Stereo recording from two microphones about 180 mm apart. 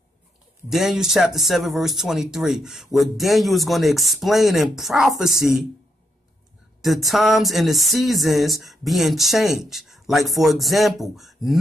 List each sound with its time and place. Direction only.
0.7 s speech: centre (ahead or behind)
6.8 s speech: centre (ahead or behind)